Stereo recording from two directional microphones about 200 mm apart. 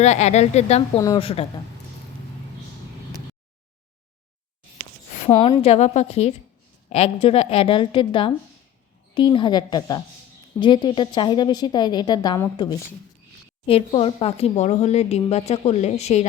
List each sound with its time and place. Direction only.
0.0 s speech: 35° left (ahead or behind)
0.9 s a woman's voice: 20° left (ahead or behind)
5.2 s a woman's voice: 30° left (ahead or behind)